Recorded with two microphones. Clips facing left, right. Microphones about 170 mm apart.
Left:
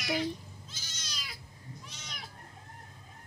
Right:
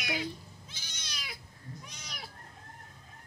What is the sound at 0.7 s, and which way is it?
Cat, 55° right (ahead or behind).